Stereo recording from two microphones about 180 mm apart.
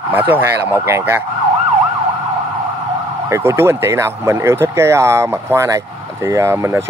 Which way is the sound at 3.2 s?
15° right (ahead or behind).